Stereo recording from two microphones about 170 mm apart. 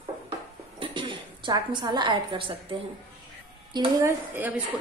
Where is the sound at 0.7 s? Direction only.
30° right (ahead or behind).